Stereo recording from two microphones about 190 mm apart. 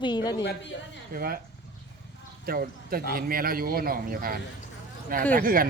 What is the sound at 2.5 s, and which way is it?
Speech, 50° right (ahead or behind).